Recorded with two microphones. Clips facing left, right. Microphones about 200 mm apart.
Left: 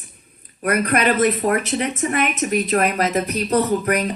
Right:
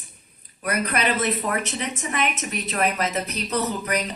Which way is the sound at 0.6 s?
55° left (ahead or behind).